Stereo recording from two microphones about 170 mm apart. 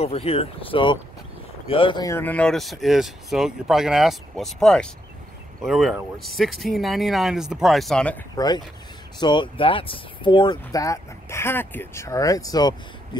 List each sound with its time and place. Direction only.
0.0 s speech: 35° left (ahead or behind)
2.0 s speech: 10° left (ahead or behind)
8.4 s speech: 25° left (ahead or behind)